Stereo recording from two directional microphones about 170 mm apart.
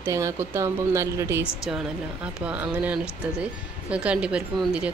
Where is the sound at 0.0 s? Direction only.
15° right (ahead or behind).